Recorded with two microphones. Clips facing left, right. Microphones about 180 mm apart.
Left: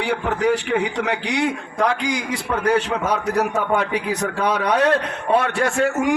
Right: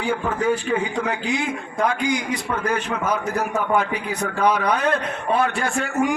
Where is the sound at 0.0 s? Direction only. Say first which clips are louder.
Left 2 dB; 75° left (ahead or behind).